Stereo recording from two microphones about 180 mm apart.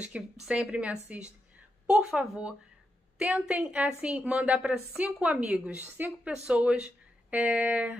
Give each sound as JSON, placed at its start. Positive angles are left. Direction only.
{"t": 0.0, "sound": "a woman's voice", "side_deg": -5}